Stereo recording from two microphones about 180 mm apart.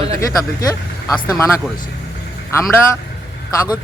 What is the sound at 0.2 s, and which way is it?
Speech, 20° left (ahead or behind).